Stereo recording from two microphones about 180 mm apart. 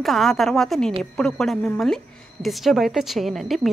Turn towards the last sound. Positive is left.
turn(degrees=0)  # may be behind; listen again after turning